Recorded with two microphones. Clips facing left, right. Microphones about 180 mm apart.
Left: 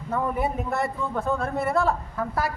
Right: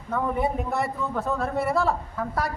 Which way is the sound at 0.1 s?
5° left (ahead or behind).